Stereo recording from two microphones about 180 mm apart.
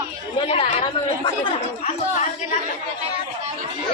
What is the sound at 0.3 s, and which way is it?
Speech, 35° left (ahead or behind).